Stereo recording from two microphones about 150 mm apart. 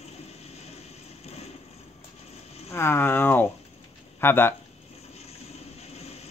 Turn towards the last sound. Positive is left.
turn(degrees=45)  # may be behind; listen again after turning